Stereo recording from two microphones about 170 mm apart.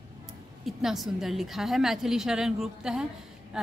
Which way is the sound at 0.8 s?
Centre (ahead or behind).